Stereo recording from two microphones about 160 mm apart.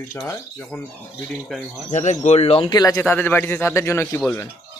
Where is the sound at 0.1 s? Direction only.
10° left (ahead or behind).